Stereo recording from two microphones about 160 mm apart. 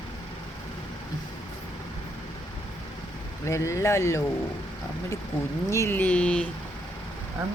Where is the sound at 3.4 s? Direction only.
20° left (ahead or behind).